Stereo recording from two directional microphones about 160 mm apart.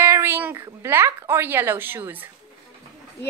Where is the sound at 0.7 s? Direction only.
15° right (ahead or behind).